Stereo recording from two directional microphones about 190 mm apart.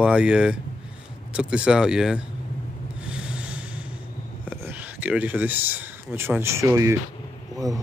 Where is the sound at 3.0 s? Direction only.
5° right (ahead or behind).